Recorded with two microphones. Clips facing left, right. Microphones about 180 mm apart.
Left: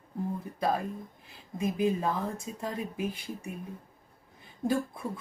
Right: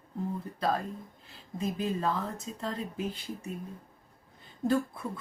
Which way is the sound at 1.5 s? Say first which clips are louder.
Left 4 dB; 15° left (ahead or behind).